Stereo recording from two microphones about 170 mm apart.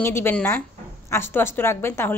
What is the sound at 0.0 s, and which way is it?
Speech, 15° left (ahead or behind).